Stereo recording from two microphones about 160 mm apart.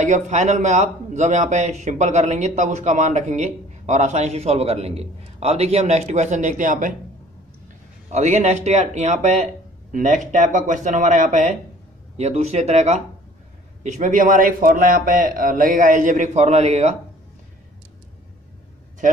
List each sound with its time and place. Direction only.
0.0 s speech: 45° right (ahead or behind)
8.1 s speech: 45° right (ahead or behind)